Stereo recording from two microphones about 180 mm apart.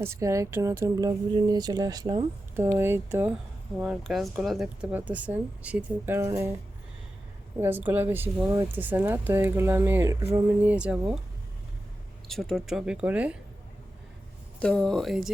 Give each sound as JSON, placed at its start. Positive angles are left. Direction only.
{"t": 0.0, "sound": "speech", "side_deg": -15}
{"t": 7.6, "sound": "speech", "side_deg": -10}
{"t": 12.3, "sound": "speech", "side_deg": 0}
{"t": 14.6, "sound": "speech", "side_deg": 5}